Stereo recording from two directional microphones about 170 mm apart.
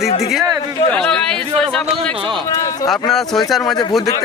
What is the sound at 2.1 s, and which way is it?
Speech, 30° right (ahead or behind).